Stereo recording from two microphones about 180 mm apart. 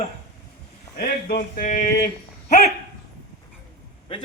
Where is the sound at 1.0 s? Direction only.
60° left (ahead or behind).